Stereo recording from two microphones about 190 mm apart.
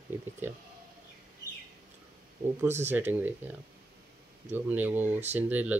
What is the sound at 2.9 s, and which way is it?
Speech, 10° right (ahead or behind).